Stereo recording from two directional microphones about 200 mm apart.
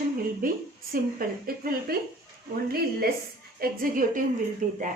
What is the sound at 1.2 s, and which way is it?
Speech, 45° right (ahead or behind).